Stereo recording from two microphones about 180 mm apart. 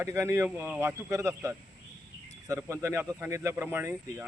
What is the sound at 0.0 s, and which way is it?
A man's voice, 15° right (ahead or behind).